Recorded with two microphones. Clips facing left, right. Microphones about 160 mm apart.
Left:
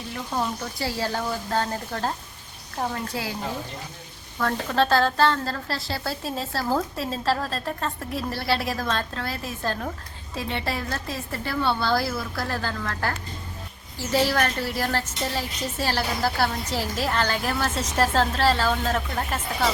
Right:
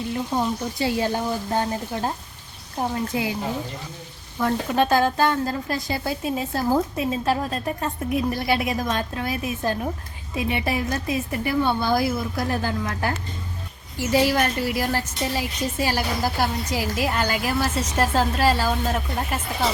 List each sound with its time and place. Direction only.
0.2 s a woman's voice: 20° right (ahead or behind)
4.4 s a woman's voice: 15° right (ahead or behind)